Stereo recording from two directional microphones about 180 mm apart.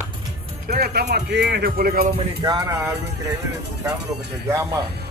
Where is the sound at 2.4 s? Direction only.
25° right (ahead or behind).